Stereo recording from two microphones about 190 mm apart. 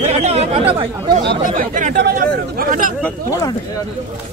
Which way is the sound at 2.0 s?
50° right (ahead or behind).